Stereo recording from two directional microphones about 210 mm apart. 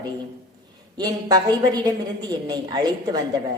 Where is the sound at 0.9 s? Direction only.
20° right (ahead or behind).